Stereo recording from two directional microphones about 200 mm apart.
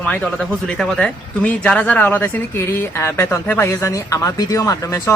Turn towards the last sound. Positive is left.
turn(degrees=15)  # may be behind; listen again after turning